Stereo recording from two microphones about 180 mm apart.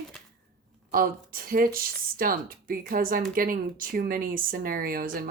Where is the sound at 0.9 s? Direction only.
55° right (ahead or behind).